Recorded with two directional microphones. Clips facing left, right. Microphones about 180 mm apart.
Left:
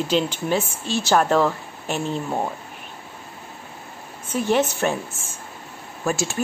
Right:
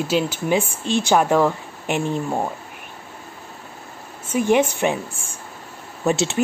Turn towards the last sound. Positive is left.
turn(degrees=-20)  # may be behind; listen again after turning